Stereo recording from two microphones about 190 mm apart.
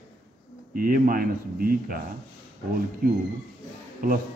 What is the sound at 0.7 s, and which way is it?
Speech, 50° right (ahead or behind).